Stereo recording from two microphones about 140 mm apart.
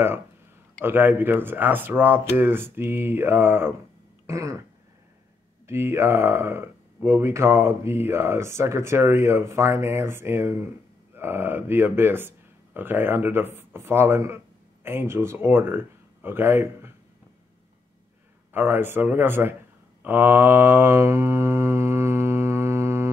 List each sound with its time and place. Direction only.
0.8 s speech: 15° right (ahead or behind)
5.7 s speech: 20° right (ahead or behind)
18.5 s speech: 15° right (ahead or behind)
20.0 s mantra: 15° right (ahead or behind)